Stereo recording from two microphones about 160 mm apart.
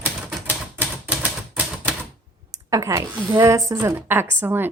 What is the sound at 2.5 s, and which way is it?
A woman's voice, 20° right (ahead or behind).